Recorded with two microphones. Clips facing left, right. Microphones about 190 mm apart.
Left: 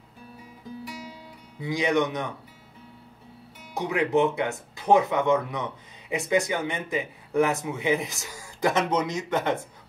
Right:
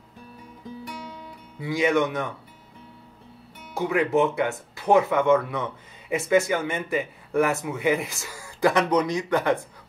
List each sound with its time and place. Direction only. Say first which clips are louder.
1.6 s speech: right 2 dB; 20° left (ahead or behind)
3.7 s speech: right 1 dB; 20° left (ahead or behind)